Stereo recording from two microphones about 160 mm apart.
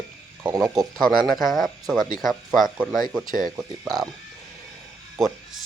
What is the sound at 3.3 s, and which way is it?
Speech, 60° right (ahead or behind).